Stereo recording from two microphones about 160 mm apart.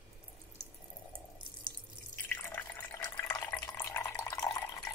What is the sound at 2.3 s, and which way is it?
Water, 10° left (ahead or behind).